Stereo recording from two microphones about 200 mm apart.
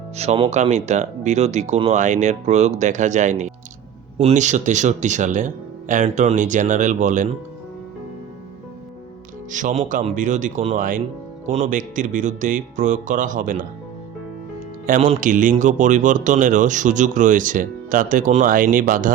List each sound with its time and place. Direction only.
0.2 s a man's voice: 30° right (ahead or behind)
9.5 s a man's voice: 40° right (ahead or behind)
14.8 s a man's voice: 40° right (ahead or behind)